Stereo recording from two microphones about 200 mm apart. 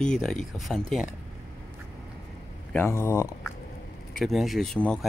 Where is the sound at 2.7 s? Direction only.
10° left (ahead or behind).